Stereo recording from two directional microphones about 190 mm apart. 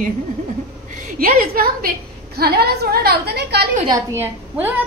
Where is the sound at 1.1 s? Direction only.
50° right (ahead or behind).